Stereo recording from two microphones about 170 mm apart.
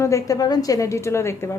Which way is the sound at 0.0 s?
20° left (ahead or behind).